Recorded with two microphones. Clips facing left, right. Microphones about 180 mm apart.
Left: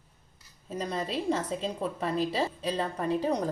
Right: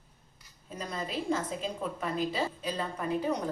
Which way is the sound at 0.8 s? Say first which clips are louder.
Left 4 dB; 30° left (ahead or behind).